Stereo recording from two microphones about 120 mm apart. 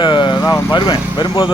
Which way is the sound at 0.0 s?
40° left (ahead or behind).